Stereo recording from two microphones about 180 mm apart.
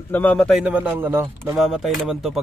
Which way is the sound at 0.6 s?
10° right (ahead or behind).